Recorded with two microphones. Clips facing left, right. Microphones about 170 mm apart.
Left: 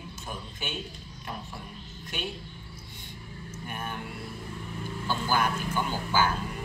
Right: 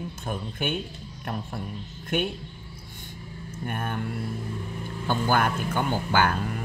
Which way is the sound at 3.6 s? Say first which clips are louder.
Right 6 dB; 55° right (ahead or behind).